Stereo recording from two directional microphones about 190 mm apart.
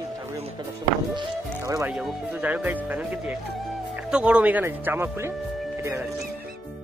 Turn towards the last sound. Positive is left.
turn(degrees=-10)  # may be behind; listen again after turning